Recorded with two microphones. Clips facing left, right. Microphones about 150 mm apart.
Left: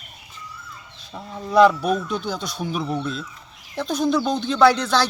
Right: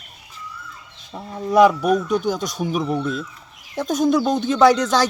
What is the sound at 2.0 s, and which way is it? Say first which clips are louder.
Speech: right 6 dB; 45° right (ahead or behind).